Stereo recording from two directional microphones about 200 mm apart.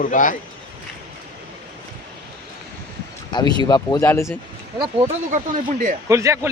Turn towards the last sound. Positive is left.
turn(degrees=-15)  # may be behind; listen again after turning